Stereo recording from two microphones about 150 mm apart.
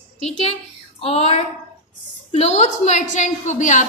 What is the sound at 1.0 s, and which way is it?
A woman's voice, 45° left (ahead or behind).